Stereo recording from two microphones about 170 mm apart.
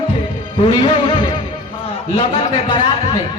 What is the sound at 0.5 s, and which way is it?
A man's voice, 30° left (ahead or behind).